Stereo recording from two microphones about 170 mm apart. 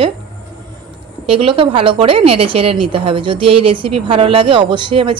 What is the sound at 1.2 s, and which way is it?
A woman's voice, 35° right (ahead or behind).